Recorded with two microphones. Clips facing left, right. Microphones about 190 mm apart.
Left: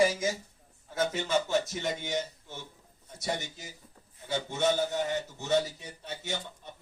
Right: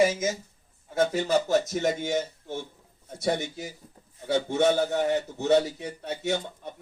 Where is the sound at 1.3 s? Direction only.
40° right (ahead or behind).